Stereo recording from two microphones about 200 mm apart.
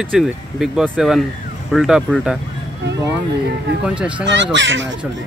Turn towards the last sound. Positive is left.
turn(degrees=-65)  # may be behind; listen again after turning